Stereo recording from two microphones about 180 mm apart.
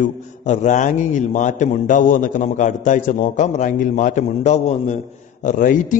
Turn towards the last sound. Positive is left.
turn(degrees=45)  # may be behind; listen again after turning